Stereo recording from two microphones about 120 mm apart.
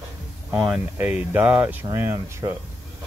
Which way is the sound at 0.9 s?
15° right (ahead or behind).